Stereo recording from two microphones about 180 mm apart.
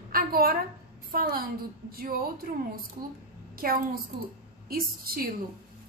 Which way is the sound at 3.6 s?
50° right (ahead or behind).